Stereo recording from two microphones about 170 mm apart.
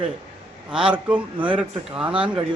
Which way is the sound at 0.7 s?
5° right (ahead or behind).